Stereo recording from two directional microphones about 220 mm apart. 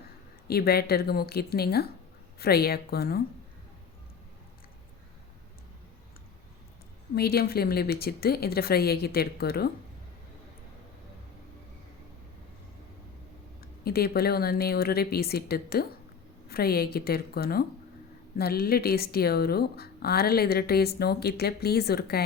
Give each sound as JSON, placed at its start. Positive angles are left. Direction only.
{"t": 0.4, "sound": "speech", "side_deg": 45}
{"t": 7.2, "sound": "speech", "side_deg": 45}
{"t": 13.6, "sound": "speech", "side_deg": 45}